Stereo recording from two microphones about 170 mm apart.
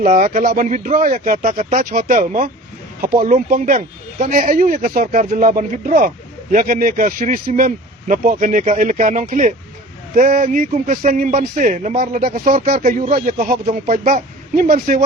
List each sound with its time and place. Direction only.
0.0 s speech: 50° right (ahead or behind)
12.8 s speech: 45° right (ahead or behind)